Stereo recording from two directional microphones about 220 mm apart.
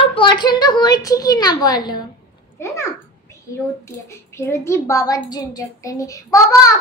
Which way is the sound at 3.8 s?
10° left (ahead or behind).